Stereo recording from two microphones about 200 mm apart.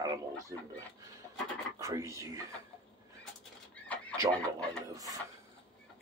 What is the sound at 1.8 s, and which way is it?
Speech, 15° right (ahead or behind).